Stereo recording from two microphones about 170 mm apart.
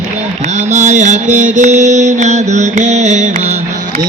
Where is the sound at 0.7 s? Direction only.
45° right (ahead or behind).